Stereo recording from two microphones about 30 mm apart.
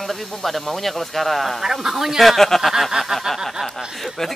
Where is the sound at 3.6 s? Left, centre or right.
Centre.